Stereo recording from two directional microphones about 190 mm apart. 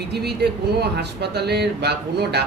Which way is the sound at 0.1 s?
60° right (ahead or behind).